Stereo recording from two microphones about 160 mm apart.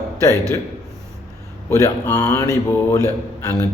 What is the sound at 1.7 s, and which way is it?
A man's voice, 20° left (ahead or behind).